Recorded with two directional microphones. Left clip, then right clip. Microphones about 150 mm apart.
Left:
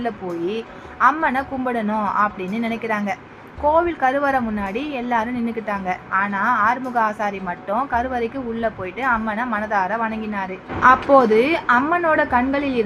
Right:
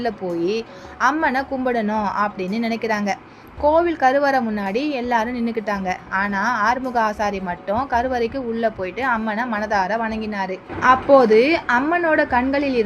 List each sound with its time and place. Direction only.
1.0 s a woman's voice: 45° right (ahead or behind)